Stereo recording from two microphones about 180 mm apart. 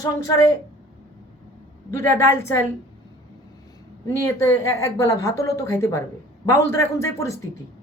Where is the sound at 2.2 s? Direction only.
15° left (ahead or behind).